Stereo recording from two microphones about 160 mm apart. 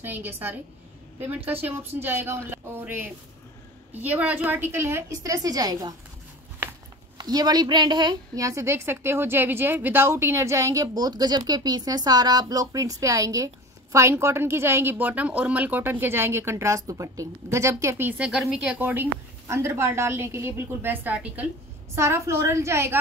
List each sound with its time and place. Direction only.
0.0 s speech: 10° right (ahead or behind)
2.0 s speech: 15° right (ahead or behind)
7.2 s a woman's voice: 25° right (ahead or behind)